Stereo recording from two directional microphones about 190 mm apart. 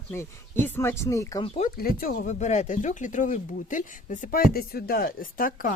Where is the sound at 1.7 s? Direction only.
50° left (ahead or behind).